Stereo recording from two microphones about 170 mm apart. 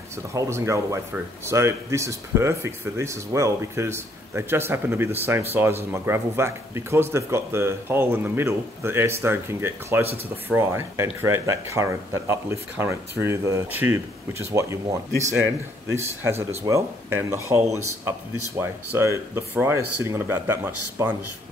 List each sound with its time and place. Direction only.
0.3 s speech: 15° right (ahead or behind)
10.0 s speech: 35° right (ahead or behind)
10.5 s speech: 15° right (ahead or behind)